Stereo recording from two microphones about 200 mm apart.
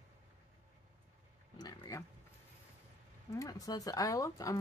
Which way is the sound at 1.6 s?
15° left (ahead or behind).